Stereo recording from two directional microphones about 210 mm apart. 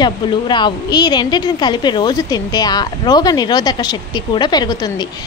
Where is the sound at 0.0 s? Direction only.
20° left (ahead or behind).